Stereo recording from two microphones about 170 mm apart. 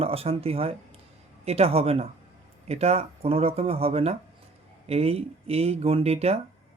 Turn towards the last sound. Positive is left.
turn(degrees=-35)  # may be behind; listen again after turning